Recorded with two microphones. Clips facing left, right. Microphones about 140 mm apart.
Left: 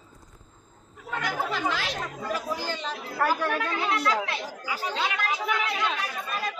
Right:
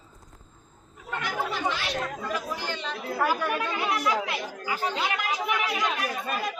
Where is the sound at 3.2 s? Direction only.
5° right (ahead or behind).